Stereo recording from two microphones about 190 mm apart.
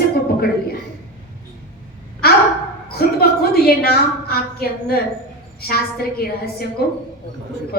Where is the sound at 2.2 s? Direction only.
55° left (ahead or behind).